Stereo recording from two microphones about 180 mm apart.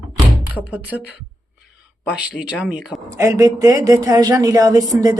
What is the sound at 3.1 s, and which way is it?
Speech, 15° right (ahead or behind).